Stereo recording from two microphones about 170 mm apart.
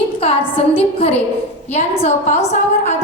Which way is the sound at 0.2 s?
35° left (ahead or behind).